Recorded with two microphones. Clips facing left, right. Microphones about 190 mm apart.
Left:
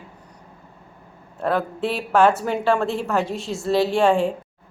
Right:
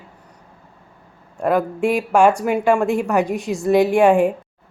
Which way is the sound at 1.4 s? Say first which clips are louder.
Right 4 dB; 10° right (ahead or behind).